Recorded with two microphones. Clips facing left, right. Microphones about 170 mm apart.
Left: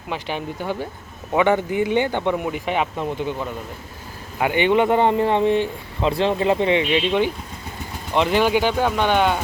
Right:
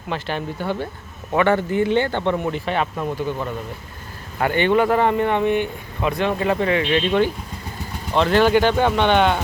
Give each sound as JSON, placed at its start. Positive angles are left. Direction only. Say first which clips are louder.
{"t": 0.1, "sound": "speech", "louder": "right 1 dB", "side_deg": 15}
{"t": 4.4, "sound": "speech", "louder": "even", "side_deg": 15}